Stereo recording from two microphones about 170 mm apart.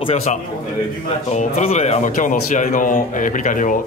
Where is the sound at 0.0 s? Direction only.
40° left (ahead or behind).